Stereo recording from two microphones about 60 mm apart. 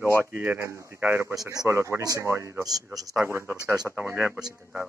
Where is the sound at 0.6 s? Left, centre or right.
Right.